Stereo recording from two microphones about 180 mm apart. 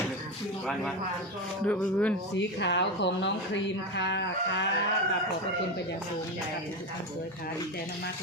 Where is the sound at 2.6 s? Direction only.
75° left (ahead or behind).